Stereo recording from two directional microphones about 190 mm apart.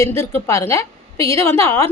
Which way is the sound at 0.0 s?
15° left (ahead or behind).